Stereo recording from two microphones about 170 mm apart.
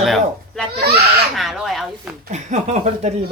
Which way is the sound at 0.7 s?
70° right (ahead or behind).